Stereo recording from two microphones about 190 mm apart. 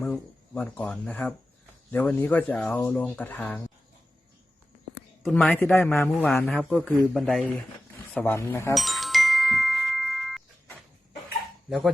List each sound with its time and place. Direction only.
0.0 s speech: 5° left (ahead or behind)
5.2 s a man's voice: 5° left (ahead or behind)
8.7 s music: centre (ahead or behind)